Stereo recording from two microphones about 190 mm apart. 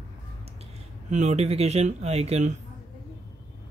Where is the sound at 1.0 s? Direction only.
35° right (ahead or behind).